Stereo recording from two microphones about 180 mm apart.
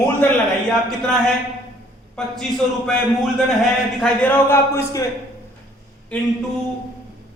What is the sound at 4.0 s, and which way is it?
Speech, 5° left (ahead or behind).